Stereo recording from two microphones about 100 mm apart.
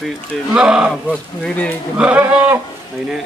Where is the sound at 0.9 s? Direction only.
10° left (ahead or behind).